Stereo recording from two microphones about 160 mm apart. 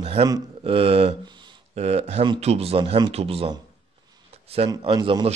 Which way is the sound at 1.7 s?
40° right (ahead or behind).